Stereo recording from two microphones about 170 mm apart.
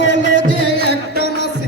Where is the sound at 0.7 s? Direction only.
70° right (ahead or behind).